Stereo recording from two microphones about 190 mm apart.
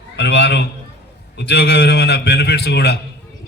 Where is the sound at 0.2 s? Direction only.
65° left (ahead or behind).